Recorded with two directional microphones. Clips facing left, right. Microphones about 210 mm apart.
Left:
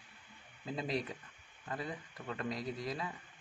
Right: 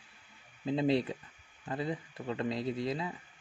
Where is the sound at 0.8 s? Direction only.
30° right (ahead or behind).